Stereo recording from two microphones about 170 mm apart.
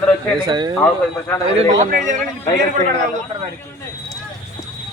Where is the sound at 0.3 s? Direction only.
25° right (ahead or behind).